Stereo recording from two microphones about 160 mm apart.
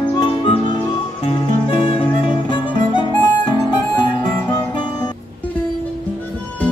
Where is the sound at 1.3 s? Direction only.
30° left (ahead or behind).